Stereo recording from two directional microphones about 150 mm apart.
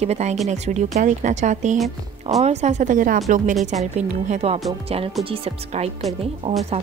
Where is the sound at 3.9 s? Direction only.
50° right (ahead or behind).